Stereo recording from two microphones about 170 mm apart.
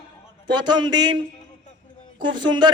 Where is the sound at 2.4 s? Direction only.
25° right (ahead or behind).